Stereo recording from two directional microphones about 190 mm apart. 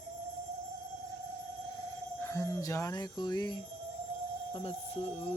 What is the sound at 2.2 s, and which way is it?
Speech, 15° left (ahead or behind).